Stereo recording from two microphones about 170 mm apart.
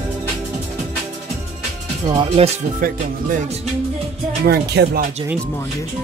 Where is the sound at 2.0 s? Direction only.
30° right (ahead or behind).